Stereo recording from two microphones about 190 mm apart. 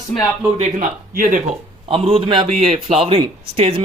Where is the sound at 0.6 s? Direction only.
45° right (ahead or behind).